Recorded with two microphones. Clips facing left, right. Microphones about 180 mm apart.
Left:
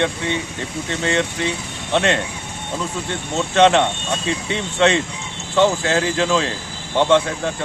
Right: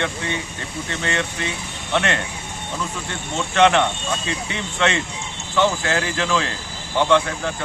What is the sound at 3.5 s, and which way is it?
Speech, 20° left (ahead or behind).